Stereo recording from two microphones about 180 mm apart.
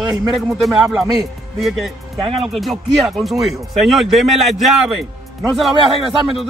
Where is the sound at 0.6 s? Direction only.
Centre (ahead or behind).